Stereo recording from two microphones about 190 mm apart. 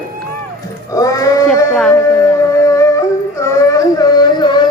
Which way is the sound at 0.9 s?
20° left (ahead or behind).